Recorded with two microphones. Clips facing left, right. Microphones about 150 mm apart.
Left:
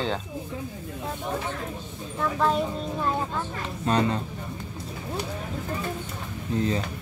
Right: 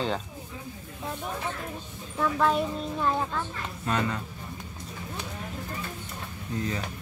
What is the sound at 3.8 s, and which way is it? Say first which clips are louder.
Speech: left 5 dB; 30° left (ahead or behind).